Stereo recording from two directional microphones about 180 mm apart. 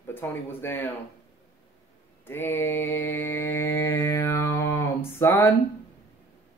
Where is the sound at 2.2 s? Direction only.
10° left (ahead or behind).